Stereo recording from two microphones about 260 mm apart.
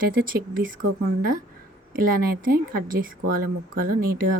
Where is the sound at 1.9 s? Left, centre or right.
Right.